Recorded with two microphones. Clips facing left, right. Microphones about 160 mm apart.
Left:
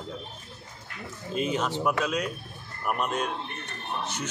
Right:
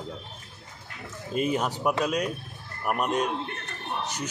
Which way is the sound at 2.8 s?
10° right (ahead or behind).